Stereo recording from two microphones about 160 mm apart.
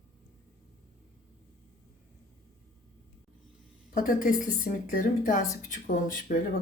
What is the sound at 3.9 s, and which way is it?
Speech, 60° left (ahead or behind).